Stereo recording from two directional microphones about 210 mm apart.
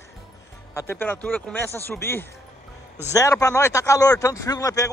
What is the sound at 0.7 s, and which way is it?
Speech, 10° left (ahead or behind).